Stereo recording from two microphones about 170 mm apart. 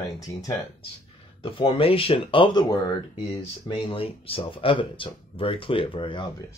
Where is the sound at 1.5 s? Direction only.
35° left (ahead or behind).